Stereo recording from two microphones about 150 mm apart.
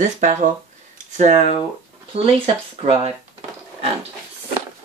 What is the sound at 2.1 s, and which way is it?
Speech, 40° right (ahead or behind).